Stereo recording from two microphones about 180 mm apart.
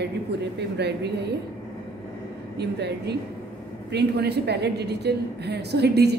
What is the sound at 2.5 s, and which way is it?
A woman's voice, 65° right (ahead or behind).